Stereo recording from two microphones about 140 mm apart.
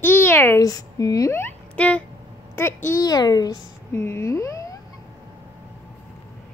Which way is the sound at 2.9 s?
30° left (ahead or behind).